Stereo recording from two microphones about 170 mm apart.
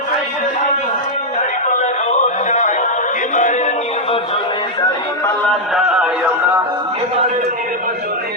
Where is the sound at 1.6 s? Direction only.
45° left (ahead or behind).